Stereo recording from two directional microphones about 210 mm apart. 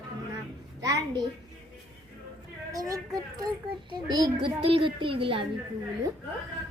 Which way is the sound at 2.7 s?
15° right (ahead or behind).